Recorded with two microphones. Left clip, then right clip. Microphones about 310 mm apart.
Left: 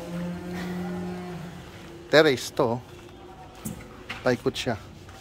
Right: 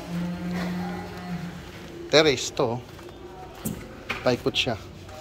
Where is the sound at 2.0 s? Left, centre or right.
Centre.